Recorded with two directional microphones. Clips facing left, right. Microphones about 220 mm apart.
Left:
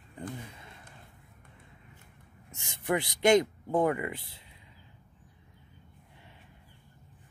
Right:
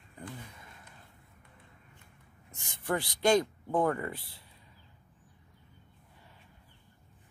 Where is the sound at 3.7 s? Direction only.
10° left (ahead or behind).